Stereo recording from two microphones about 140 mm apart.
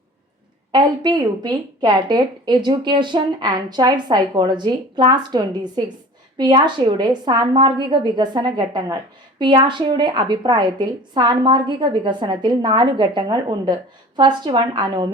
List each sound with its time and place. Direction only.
0.7 s a woman's voice: 30° right (ahead or behind)